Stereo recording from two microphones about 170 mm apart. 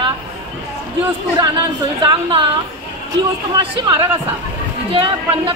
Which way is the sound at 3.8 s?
25° right (ahead or behind).